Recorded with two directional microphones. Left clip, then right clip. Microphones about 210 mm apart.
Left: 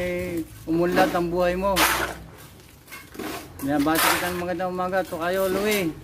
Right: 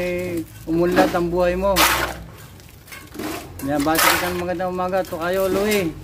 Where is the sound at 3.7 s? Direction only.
10° left (ahead or behind).